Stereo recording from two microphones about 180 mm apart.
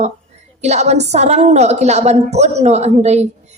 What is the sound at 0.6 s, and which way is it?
A woman's voice, 40° right (ahead or behind).